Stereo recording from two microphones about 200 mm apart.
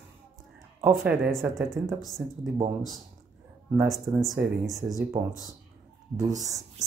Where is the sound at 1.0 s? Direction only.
Centre (ahead or behind).